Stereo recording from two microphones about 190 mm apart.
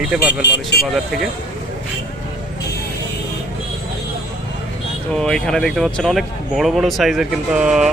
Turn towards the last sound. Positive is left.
turn(degrees=0)  # may be behind; listen again after turning